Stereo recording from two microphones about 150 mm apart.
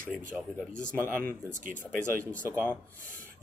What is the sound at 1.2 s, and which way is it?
Speech, 60° right (ahead or behind).